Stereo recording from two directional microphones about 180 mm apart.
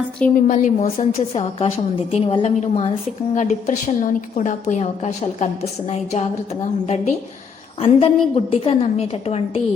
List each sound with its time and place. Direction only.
0.3 s a woman's voice: 45° left (ahead or behind)